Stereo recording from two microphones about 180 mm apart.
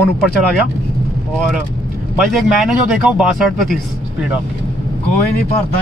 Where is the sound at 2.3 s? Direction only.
5° right (ahead or behind).